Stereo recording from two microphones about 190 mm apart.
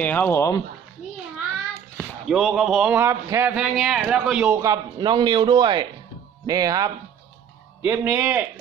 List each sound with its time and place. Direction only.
0.0 s speech: 10° left (ahead or behind)
2.0 s speech: centre (ahead or behind)
4.6 s a man's voice: 20° right (ahead or behind)